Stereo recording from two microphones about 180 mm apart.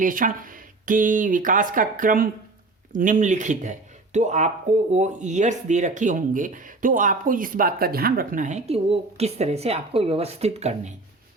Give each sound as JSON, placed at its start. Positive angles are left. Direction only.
{"t": 0.0, "sound": "speech", "side_deg": -50}